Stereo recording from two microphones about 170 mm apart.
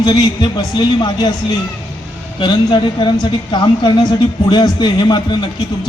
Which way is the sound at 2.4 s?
30° left (ahead or behind).